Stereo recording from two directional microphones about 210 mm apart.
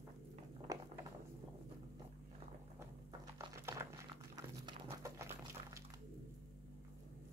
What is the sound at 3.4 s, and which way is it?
Crumpling, 15° right (ahead or behind).